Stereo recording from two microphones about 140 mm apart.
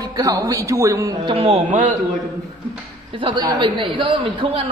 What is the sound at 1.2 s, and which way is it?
Speech, 40° right (ahead or behind).